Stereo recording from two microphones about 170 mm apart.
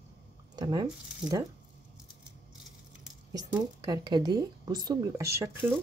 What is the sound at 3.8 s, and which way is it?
Speech, 25° right (ahead or behind).